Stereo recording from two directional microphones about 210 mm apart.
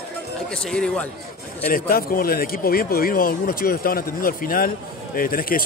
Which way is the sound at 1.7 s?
45° left (ahead or behind).